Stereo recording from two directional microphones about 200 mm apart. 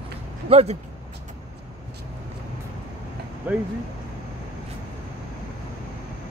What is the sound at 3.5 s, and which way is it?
Speech, 10° right (ahead or behind).